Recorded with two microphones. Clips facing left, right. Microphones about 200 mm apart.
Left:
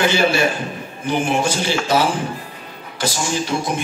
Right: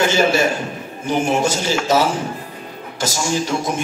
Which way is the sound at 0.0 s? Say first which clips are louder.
Right 1 dB; 45° right (ahead or behind).